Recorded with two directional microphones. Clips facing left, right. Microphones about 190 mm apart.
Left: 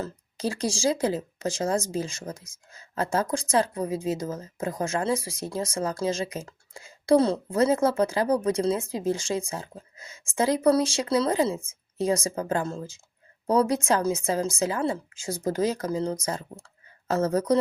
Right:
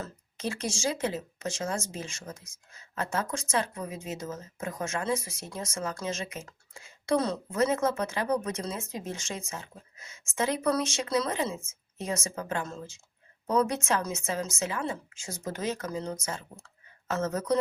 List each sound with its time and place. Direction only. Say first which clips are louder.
0.0 s speech: left 5 dB; 35° left (ahead or behind)